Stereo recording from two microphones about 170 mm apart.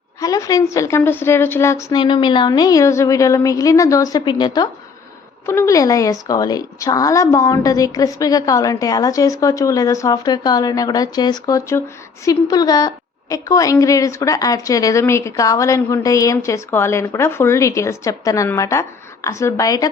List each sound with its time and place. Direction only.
0.2 s a woman's voice: 20° left (ahead or behind)